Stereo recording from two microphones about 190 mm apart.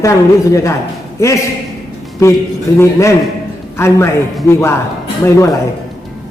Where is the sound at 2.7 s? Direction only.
15° left (ahead or behind).